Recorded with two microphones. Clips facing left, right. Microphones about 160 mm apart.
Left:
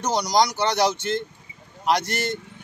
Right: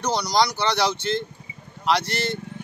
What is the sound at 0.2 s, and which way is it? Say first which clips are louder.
Speech: left 3 dB; 45° left (ahead or behind).